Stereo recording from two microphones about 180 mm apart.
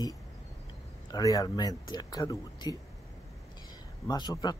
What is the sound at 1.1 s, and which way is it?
Speech, 20° left (ahead or behind).